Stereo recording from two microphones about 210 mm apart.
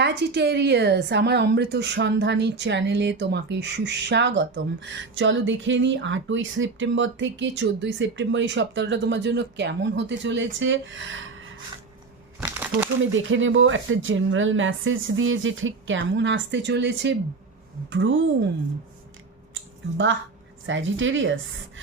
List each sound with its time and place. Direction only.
0.0 s a woman's voice: 55° right (ahead or behind)
12.4 s crumpling: 5° right (ahead or behind)
13.0 s a woman's voice: 65° right (ahead or behind)
20.7 s a woman's voice: 65° right (ahead or behind)